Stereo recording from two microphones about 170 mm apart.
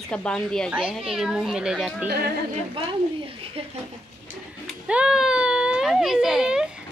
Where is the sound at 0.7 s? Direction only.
5° right (ahead or behind).